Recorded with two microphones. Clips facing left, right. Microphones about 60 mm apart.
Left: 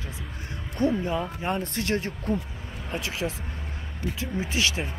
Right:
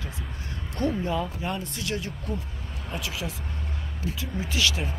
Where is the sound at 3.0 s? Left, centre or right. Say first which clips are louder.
Left 4 dB; left.